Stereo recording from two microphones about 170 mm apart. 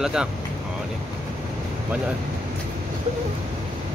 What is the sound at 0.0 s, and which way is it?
Speech, 5° right (ahead or behind).